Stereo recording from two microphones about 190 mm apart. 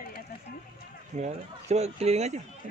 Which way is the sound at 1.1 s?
35° right (ahead or behind).